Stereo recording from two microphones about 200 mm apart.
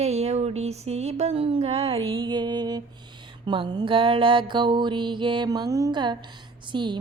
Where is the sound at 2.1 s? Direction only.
25° right (ahead or behind).